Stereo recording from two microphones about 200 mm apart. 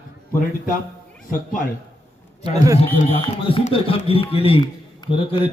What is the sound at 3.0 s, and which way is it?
Speech, 30° left (ahead or behind).